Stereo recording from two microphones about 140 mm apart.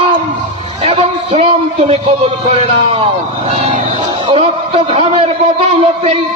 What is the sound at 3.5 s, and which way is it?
Vehicle, 55° right (ahead or behind).